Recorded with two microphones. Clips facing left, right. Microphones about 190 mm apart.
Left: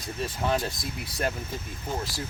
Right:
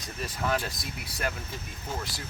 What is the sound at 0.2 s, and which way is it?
Speech, 30° left (ahead or behind).